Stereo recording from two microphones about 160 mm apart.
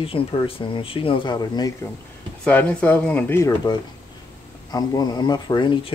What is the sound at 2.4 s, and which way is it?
Speech, 10° left (ahead or behind).